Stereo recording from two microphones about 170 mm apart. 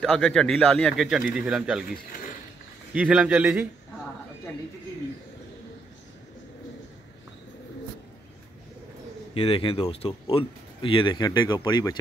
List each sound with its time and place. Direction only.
0.0 s speech: centre (ahead or behind)
2.9 s a man's voice: 5° right (ahead or behind)
9.3 s speech: 35° left (ahead or behind)